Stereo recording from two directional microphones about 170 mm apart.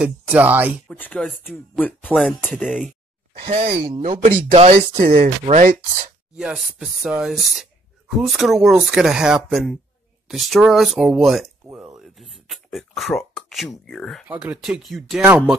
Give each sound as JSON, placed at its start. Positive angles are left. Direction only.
{"t": 0.0, "sound": "speech", "side_deg": -10}
{"t": 0.8, "sound": "speech", "side_deg": 10}
{"t": 2.4, "sound": "speech", "side_deg": -5}
{"t": 3.4, "sound": "speech", "side_deg": -35}
{"t": 4.2, "sound": "speech", "side_deg": -40}
{"t": 4.9, "sound": "speech", "side_deg": -55}
{"t": 6.3, "sound": "speech", "side_deg": -5}
{"t": 11.8, "sound": "a sound", "side_deg": 0}
{"t": 13.8, "sound": "speech", "side_deg": 5}
{"t": 14.2, "sound": "speech", "side_deg": -10}